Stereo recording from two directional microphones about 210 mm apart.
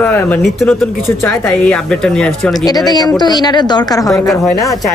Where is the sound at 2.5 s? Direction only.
20° left (ahead or behind).